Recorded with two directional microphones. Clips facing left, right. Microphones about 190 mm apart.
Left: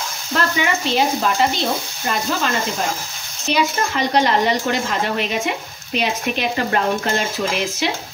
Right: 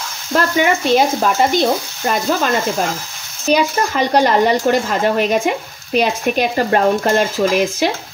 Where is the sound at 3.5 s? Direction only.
45° right (ahead or behind).